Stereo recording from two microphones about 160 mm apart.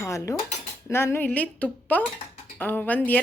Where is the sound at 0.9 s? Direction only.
15° left (ahead or behind).